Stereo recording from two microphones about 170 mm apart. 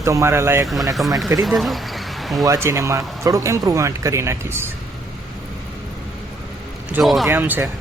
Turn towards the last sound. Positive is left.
turn(degrees=-10)  # may be behind; listen again after turning